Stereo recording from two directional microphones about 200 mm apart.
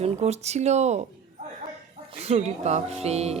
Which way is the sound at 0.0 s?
35° right (ahead or behind).